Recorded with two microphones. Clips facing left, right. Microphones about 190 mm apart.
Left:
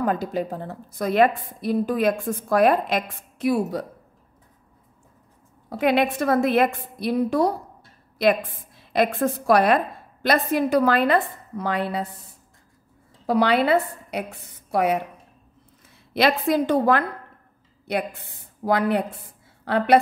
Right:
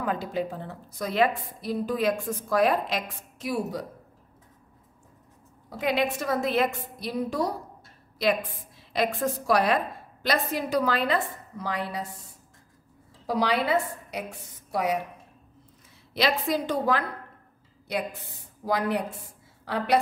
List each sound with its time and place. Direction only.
0.0 s a woman's voice: 45° left (ahead or behind); by 3.8 s 60° left (ahead or behind)
5.7 s a woman's voice: 60° left (ahead or behind)
13.3 s a woman's voice: 60° left (ahead or behind)
16.1 s a woman's voice: 55° left (ahead or behind)
18.7 s a woman's voice: 60° left (ahead or behind)